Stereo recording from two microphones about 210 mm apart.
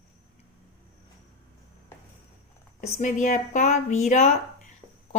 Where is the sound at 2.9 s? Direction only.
35° left (ahead or behind).